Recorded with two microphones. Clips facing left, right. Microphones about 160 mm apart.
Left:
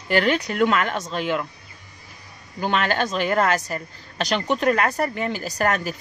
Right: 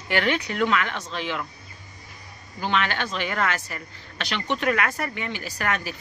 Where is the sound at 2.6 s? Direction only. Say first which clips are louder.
Left 3 dB; 45° left (ahead or behind).